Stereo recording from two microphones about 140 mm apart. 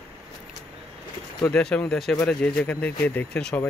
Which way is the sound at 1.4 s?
5° left (ahead or behind).